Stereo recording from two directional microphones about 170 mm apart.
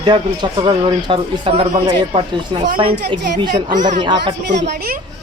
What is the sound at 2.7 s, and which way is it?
Speech, 30° right (ahead or behind).